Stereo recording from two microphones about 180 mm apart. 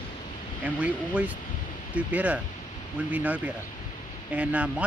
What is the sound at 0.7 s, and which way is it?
Speech, 10° right (ahead or behind).